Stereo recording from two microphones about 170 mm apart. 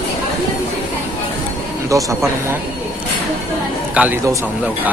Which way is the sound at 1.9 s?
20° right (ahead or behind).